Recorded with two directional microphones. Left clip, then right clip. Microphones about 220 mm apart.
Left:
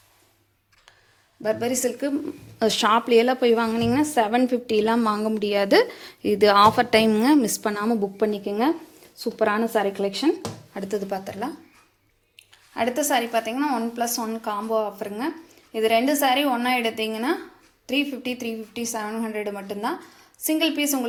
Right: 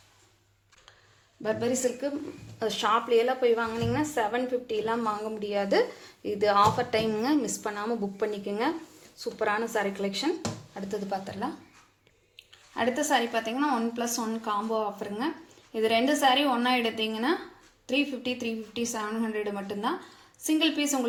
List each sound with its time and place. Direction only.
1.4 s a woman's voice: 25° left (ahead or behind)
2.6 s a woman's voice: 45° left (ahead or behind)
12.7 s a woman's voice: 25° left (ahead or behind)